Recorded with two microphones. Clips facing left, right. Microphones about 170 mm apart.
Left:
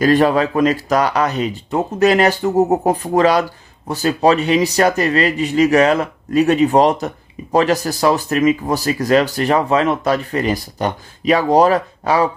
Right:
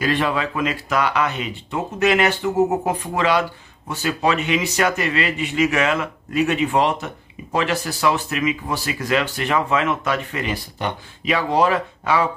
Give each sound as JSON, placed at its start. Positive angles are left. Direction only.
{"t": 0.0, "sound": "speech", "side_deg": 40}